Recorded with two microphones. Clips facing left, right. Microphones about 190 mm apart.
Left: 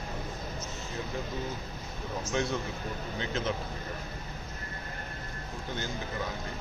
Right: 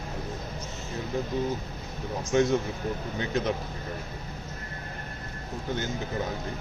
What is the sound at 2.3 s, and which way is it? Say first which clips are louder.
Speech: right 9 dB; 20° right (ahead or behind).